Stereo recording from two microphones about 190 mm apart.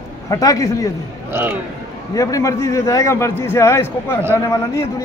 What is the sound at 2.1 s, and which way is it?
A man's voice, 15° left (ahead or behind).